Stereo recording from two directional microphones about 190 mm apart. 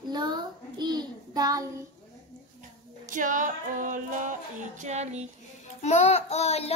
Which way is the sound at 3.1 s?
45° right (ahead or behind).